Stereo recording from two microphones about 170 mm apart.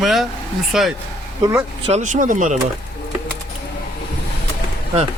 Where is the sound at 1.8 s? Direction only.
40° right (ahead or behind).